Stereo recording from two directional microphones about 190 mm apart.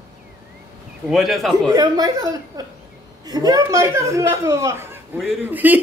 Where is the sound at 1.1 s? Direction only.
Centre (ahead or behind).